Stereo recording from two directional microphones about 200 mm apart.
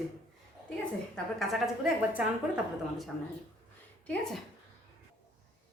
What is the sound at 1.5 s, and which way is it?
A woman's voice, 5° right (ahead or behind).